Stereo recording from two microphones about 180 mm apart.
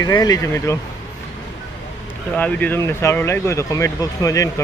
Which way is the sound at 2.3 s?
10° left (ahead or behind).